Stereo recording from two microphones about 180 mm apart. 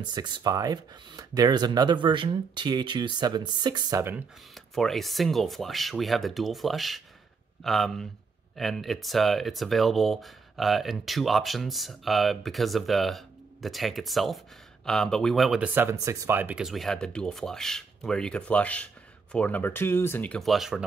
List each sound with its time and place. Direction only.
0.0 s speech: 25° right (ahead or behind)
4.7 s speech: centre (ahead or behind)